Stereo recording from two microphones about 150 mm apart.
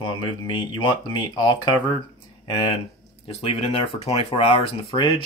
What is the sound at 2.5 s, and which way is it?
Speech, 35° left (ahead or behind).